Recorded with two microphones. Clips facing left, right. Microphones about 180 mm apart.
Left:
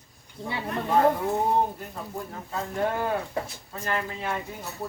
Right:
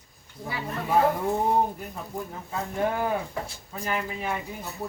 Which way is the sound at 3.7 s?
10° right (ahead or behind).